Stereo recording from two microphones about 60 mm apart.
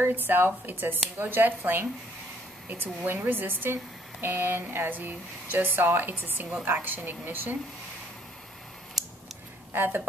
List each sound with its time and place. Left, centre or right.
0.0 s speech: right
9.7 s speech: right